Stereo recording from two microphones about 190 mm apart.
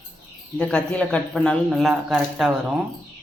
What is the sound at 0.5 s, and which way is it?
Speech, 5° left (ahead or behind).